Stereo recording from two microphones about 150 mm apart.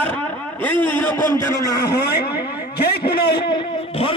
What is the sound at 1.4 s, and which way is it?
Speech, 25° left (ahead or behind).